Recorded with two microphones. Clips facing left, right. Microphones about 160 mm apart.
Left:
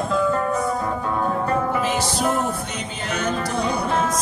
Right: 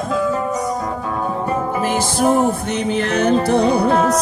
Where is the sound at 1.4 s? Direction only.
20° right (ahead or behind).